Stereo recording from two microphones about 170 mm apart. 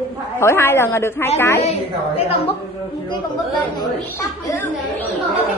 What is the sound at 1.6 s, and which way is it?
Speech, 40° left (ahead or behind).